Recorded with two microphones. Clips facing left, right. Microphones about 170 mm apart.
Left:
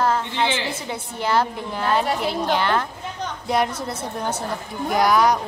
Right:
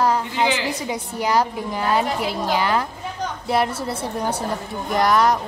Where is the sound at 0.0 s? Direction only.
10° right (ahead or behind).